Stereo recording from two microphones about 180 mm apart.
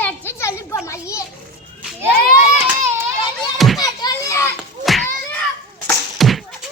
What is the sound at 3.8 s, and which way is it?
Children playing, 20° left (ahead or behind).